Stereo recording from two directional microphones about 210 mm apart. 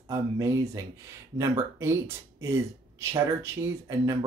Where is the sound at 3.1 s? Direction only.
15° right (ahead or behind).